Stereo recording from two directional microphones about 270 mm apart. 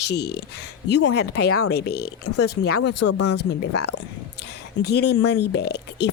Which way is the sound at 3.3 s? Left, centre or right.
Left.